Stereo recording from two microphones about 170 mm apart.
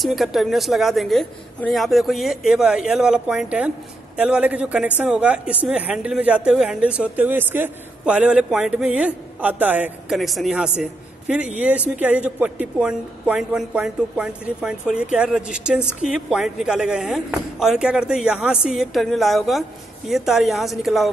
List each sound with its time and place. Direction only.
0.0 s a woman's voice: centre (ahead or behind)